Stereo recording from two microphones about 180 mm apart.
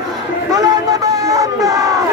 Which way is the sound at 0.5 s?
20° right (ahead or behind).